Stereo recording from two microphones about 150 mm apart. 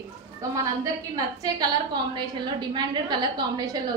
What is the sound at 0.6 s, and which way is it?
A woman's voice, 25° right (ahead or behind).